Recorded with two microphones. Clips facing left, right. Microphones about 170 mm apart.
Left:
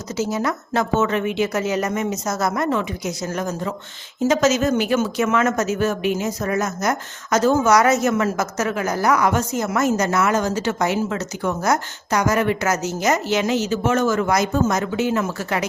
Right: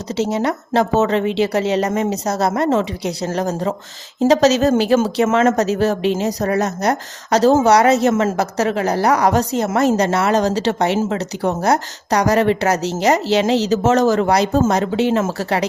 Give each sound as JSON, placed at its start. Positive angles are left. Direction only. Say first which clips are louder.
{"t": 0.2, "sound": "a woman's voice", "louder": "right 3 dB", "side_deg": -30}